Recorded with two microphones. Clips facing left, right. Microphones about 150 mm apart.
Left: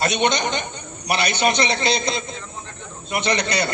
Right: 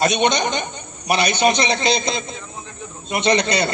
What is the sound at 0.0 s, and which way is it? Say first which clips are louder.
A man's voice: right 2 dB; 20° right (ahead or behind).